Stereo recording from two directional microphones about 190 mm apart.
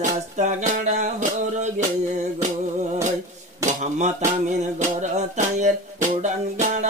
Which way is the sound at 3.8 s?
40° right (ahead or behind).